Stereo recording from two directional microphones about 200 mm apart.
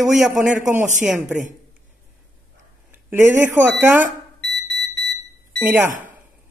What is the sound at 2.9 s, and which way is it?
Speech, 10° right (ahead or behind).